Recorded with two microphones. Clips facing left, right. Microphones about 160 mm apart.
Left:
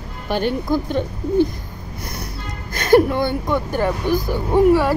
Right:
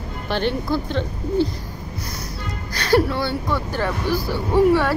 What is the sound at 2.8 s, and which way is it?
Speech, 20° left (ahead or behind).